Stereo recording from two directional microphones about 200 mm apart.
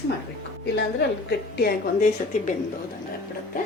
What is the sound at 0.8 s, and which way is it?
Speech, 55° left (ahead or behind).